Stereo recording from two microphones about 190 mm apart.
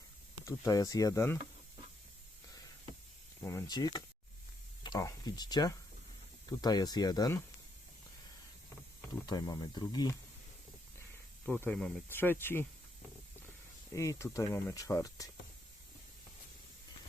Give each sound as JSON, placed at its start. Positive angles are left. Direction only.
{"t": 0.4, "sound": "speech", "side_deg": 20}
{"t": 3.4, "sound": "speech", "side_deg": 15}
{"t": 9.2, "sound": "speech", "side_deg": 20}
{"t": 11.4, "sound": "speech", "side_deg": 5}
{"t": 13.9, "sound": "speech", "side_deg": 15}